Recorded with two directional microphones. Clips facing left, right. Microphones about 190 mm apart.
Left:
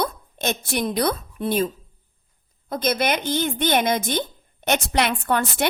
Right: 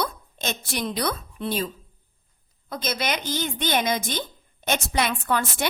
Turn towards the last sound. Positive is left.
turn(degrees=60)  # may be behind; listen again after turning